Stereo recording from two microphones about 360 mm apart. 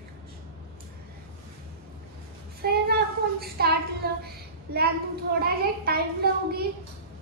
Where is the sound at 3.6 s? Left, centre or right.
Right.